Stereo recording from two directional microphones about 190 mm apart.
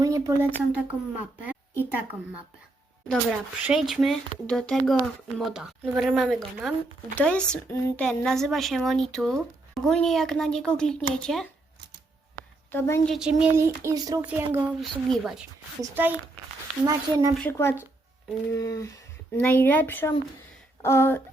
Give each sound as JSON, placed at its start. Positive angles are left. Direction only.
{"t": 0.0, "sound": "a woman's voice", "side_deg": -15}
{"t": 3.1, "sound": "speech", "side_deg": 0}
{"t": 12.7, "sound": "speech", "side_deg": 15}
{"t": 13.1, "sound": "a woman's voice", "side_deg": -5}
{"t": 17.3, "sound": "speech", "side_deg": 10}